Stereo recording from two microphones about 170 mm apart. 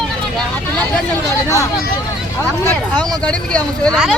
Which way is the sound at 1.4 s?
20° left (ahead or behind).